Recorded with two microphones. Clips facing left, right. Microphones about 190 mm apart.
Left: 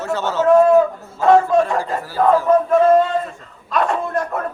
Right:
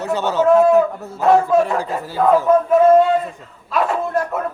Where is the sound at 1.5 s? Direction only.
5° right (ahead or behind).